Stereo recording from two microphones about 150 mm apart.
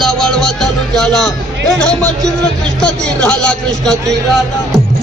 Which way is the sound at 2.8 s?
5° left (ahead or behind).